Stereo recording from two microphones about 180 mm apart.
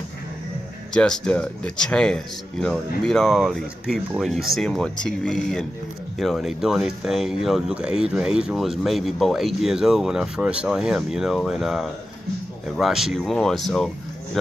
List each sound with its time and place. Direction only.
0.9 s speech: 5° left (ahead or behind)